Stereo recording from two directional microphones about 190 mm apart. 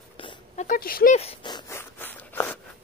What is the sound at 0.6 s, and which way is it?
Speech, 45° left (ahead or behind).